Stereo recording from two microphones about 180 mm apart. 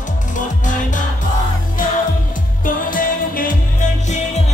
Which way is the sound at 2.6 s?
50° left (ahead or behind).